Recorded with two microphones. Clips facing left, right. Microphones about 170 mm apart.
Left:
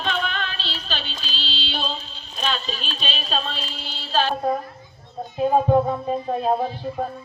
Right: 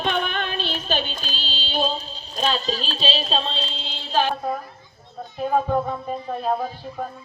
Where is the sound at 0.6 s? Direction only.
50° right (ahead or behind); by 4.3 s 15° right (ahead or behind).